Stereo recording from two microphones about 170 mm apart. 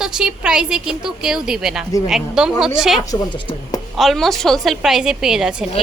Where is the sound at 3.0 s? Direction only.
20° left (ahead or behind).